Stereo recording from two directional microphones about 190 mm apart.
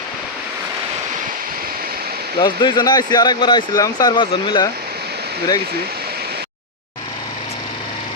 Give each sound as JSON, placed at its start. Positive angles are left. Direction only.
{"t": 2.4, "sound": "speech", "side_deg": 25}